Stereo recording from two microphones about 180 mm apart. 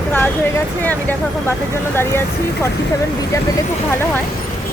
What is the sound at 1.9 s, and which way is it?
Speech, 10° left (ahead or behind).